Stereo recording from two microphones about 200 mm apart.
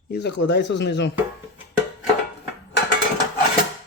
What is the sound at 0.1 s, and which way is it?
Speech, 60° left (ahead or behind).